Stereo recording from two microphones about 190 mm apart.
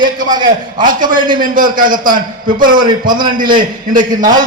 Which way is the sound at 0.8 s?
45° right (ahead or behind).